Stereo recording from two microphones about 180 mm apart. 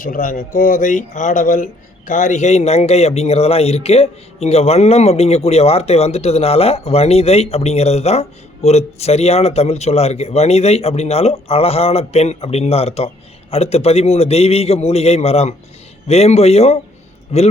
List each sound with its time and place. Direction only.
0.0 s speech: 45° left (ahead or behind)